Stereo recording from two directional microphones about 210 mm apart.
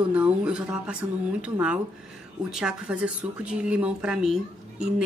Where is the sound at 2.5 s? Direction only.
5° right (ahead or behind).